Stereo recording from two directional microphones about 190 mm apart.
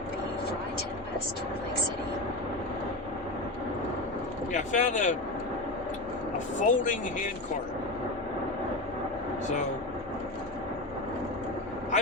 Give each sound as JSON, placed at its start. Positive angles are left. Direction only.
{"t": 4.5, "sound": "speech", "side_deg": 40}
{"t": 6.6, "sound": "speech", "side_deg": 40}